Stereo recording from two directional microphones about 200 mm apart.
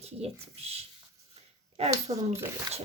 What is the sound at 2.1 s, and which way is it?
Speech, 30° right (ahead or behind).